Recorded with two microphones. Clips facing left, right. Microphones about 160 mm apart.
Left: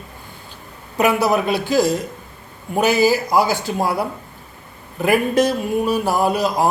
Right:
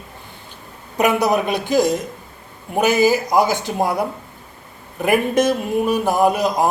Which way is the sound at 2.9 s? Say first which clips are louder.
Right 1 dB; 20° right (ahead or behind).